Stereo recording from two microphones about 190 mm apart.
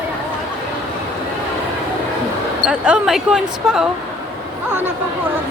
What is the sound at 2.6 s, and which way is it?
Speech, 5° right (ahead or behind).